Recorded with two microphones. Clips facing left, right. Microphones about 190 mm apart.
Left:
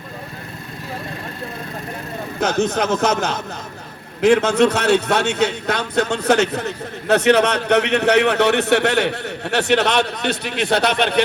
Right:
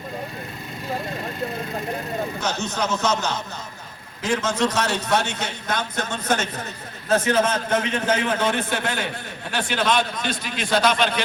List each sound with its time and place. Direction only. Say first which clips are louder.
2.4 s a man's voice: left 7 dB; 60° left (ahead or behind)